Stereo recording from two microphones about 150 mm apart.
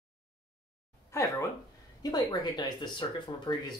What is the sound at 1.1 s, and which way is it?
Speech, 20° left (ahead or behind).